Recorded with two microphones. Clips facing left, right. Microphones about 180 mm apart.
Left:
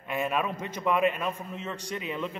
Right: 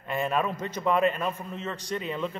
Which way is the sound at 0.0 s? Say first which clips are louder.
Right 2 dB; 5° left (ahead or behind).